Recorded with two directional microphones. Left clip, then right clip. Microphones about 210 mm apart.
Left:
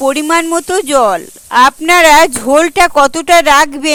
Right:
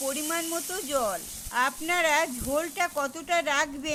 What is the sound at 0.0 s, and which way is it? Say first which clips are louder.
Speech: left 19 dB; 45° left (ahead or behind).